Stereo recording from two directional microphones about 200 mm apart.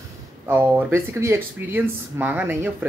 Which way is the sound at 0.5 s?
10° right (ahead or behind).